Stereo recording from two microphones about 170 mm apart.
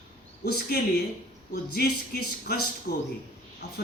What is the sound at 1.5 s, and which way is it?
A man's voice, 70° left (ahead or behind).